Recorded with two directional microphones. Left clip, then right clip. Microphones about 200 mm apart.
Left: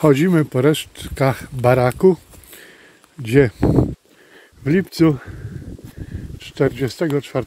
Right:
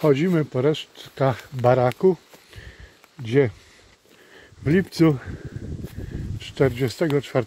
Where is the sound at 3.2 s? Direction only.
25° left (ahead or behind).